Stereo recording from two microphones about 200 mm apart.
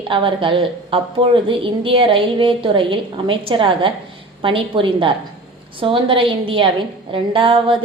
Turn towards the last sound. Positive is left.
turn(degrees=-25)  # may be behind; listen again after turning